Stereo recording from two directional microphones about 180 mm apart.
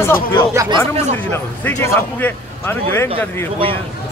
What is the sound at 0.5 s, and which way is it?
Speech, 15° right (ahead or behind).